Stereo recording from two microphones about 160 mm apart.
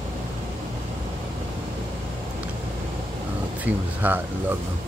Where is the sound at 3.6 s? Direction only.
10° right (ahead or behind).